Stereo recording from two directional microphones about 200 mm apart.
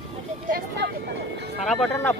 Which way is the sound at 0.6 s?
55° right (ahead or behind).